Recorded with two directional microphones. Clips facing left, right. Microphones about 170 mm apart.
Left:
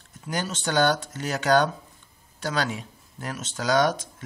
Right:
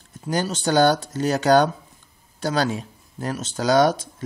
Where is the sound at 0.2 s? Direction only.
35° right (ahead or behind).